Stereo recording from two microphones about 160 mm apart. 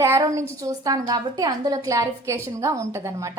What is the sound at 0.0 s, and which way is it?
A woman's voice, 20° right (ahead or behind).